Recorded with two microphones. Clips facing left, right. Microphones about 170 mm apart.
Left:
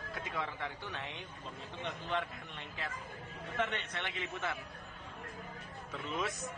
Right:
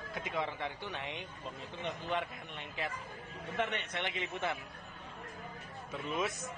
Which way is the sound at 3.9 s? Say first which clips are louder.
Right 3 dB; 20° right (ahead or behind).